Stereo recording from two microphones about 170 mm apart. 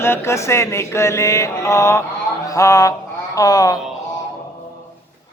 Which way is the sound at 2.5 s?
20° left (ahead or behind).